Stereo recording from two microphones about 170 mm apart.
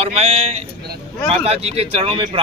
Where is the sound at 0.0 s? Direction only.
40° right (ahead or behind).